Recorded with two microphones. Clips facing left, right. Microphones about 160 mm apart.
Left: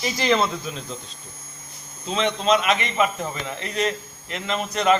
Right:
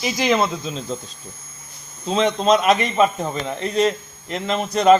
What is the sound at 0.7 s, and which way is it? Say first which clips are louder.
Speech: right 4 dB; 25° right (ahead or behind).